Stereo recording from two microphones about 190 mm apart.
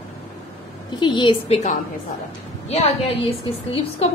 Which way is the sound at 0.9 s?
25° left (ahead or behind).